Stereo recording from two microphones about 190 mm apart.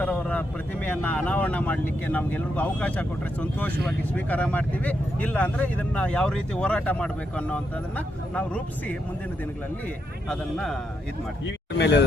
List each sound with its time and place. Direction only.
0.0 s vehicle: 5° left (ahead or behind)
0.9 s speech: 10° left (ahead or behind)
10.2 s a man's voice: centre (ahead or behind)
11.4 s speech: 65° left (ahead or behind)